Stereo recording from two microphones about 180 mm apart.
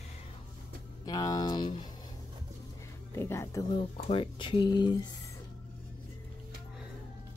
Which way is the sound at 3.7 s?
30° left (ahead or behind).